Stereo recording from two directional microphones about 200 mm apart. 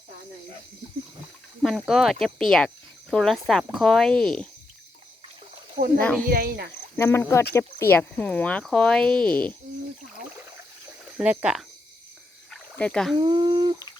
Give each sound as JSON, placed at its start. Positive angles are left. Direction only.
{"t": 1.6, "sound": "speech", "side_deg": 0}
{"t": 6.0, "sound": "speech", "side_deg": 5}
{"t": 6.2, "sound": "speech", "side_deg": -45}
{"t": 6.9, "sound": "speech", "side_deg": 10}
{"t": 11.2, "sound": "speech", "side_deg": -5}
{"t": 12.5, "sound": "frog", "side_deg": 5}
{"t": 13.1, "sound": "speech", "side_deg": -25}